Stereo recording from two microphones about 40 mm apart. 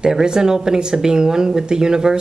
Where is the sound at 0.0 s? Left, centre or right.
Centre.